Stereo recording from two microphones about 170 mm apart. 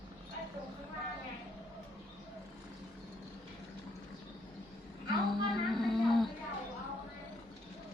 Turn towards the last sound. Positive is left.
turn(degrees=0)  # may be behind; listen again after turning